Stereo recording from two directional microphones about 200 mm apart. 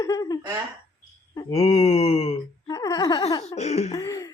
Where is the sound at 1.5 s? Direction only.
30° left (ahead or behind).